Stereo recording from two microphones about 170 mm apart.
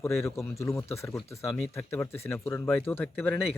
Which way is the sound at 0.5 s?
15° left (ahead or behind).